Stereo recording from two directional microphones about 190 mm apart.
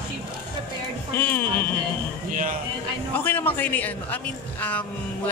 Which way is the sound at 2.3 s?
45° right (ahead or behind).